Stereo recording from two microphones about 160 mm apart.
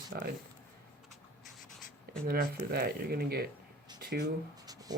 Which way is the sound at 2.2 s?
70° right (ahead or behind).